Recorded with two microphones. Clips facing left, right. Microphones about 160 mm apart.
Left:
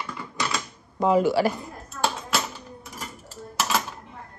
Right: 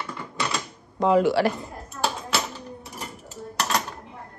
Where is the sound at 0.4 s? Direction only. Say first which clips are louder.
Even; centre (ahead or behind).